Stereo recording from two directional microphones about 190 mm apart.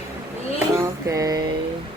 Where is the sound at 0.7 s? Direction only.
15° right (ahead or behind).